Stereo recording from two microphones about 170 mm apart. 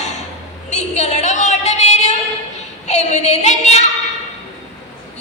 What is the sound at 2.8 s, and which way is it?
Child singing, 40° left (ahead or behind).